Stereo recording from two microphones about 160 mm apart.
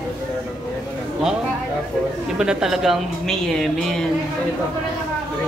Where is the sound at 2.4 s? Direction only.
5° right (ahead or behind).